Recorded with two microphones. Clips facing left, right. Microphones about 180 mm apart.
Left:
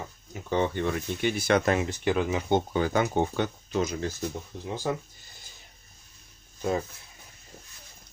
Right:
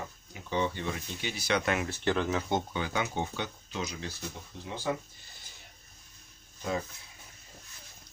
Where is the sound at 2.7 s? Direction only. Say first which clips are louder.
Left 7 dB; 45° left (ahead or behind).